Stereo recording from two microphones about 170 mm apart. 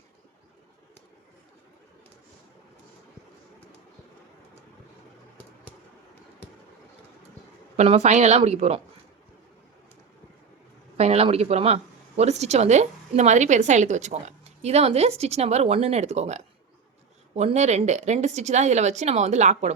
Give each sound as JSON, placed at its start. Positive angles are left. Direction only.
{"t": 7.8, "sound": "a woman's voice", "side_deg": -40}
{"t": 10.9, "sound": "a woman's voice", "side_deg": -40}